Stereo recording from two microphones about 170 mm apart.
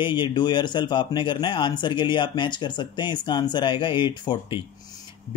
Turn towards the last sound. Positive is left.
turn(degrees=25)  # may be behind; listen again after turning